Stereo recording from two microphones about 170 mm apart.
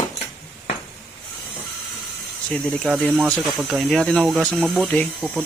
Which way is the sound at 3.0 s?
10° left (ahead or behind).